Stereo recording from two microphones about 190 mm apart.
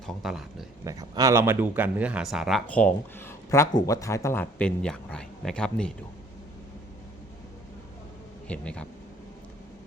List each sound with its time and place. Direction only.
0.0 s speech: centre (ahead or behind)
0.9 s speech: 20° right (ahead or behind); by 5.9 s 5° left (ahead or behind)
8.4 s speech: 5° left (ahead or behind)